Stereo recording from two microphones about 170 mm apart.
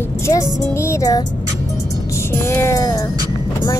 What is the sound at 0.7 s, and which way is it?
Speech, 15° left (ahead or behind).